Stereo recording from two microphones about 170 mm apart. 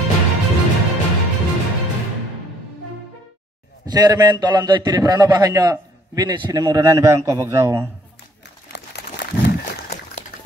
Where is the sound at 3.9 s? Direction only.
25° right (ahead or behind).